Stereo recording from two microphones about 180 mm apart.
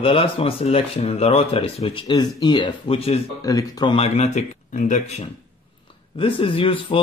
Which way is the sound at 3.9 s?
35° left (ahead or behind).